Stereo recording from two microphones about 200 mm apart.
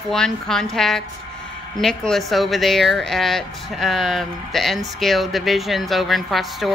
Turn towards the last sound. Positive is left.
turn(degrees=0)  # may be behind; listen again after turning